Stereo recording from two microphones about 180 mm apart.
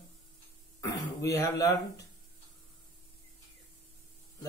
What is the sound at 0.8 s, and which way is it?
Speech, 15° left (ahead or behind).